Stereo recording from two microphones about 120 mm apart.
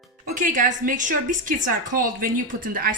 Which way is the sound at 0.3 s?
90° right.